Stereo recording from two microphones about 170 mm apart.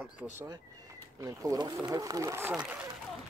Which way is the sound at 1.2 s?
20° right (ahead or behind).